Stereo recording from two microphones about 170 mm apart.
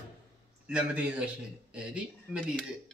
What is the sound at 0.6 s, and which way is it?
Speech, 5° right (ahead or behind).